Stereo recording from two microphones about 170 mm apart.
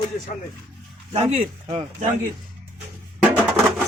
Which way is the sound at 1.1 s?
40° right (ahead or behind).